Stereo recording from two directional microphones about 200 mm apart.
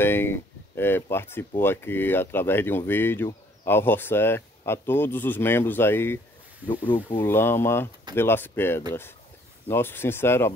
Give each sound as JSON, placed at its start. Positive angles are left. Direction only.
{"t": 0.0, "sound": "speech", "side_deg": 10}
{"t": 7.2, "sound": "speech", "side_deg": 10}